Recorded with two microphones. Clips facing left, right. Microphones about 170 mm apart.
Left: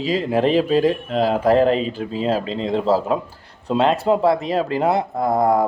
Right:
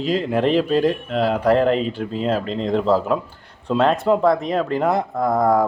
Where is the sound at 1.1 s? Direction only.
35° left (ahead or behind).